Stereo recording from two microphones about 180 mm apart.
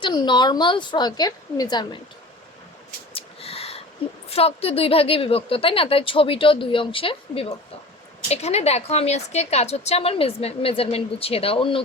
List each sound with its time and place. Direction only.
0.0 s a woman's voice: 25° left (ahead or behind)
3.1 s a sound: 30° left (ahead or behind)
4.3 s a woman's voice: 35° left (ahead or behind)